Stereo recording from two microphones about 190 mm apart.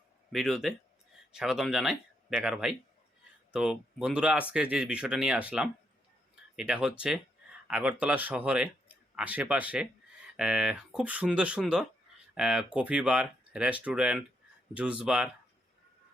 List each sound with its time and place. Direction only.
0.3 s speech: centre (ahead or behind)